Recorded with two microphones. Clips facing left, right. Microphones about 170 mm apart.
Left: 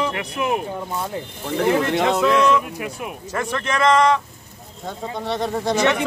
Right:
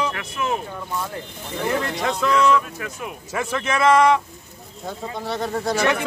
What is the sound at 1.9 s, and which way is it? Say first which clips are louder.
Speech: left 6 dB; 70° left (ahead or behind).